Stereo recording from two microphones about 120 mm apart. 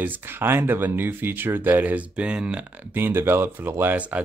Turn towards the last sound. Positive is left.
turn(degrees=-10)  # may be behind; listen again after turning